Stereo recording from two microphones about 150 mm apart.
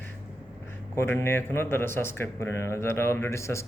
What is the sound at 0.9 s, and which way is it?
Speech, 15° left (ahead or behind).